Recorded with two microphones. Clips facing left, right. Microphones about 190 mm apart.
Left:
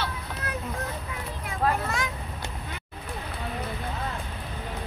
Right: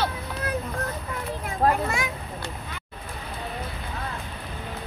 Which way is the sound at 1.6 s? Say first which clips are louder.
Right 4 dB; 40° right (ahead or behind).